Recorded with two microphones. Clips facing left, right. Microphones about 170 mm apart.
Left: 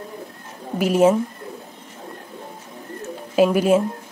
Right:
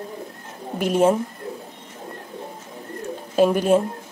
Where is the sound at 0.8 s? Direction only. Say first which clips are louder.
Left 2 dB; 5° left (ahead or behind).